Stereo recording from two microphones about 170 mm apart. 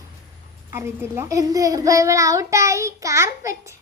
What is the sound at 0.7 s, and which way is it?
A child's voice, 15° right (ahead or behind).